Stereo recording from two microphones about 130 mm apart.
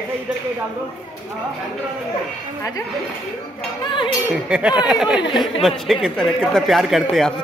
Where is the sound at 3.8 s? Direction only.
35° left (ahead or behind).